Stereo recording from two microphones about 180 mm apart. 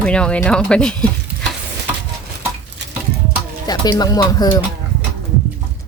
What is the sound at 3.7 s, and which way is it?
Speech, 20° left (ahead or behind).